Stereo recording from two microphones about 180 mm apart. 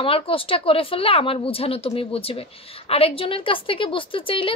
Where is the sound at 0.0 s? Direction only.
30° left (ahead or behind).